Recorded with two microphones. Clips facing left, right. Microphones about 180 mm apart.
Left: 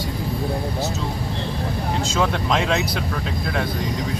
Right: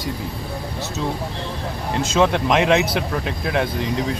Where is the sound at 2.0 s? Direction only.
20° right (ahead or behind).